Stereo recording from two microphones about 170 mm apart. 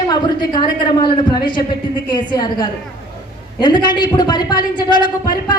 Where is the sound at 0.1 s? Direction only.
25° left (ahead or behind).